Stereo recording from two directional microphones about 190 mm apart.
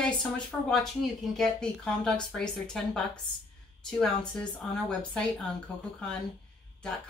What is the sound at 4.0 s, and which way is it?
A woman's voice, 5° left (ahead or behind).